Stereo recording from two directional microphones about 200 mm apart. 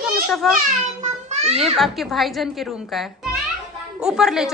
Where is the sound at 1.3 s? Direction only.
35° right (ahead or behind).